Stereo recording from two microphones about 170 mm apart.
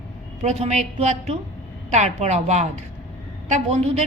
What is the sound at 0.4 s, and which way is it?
A woman's voice, 40° right (ahead or behind).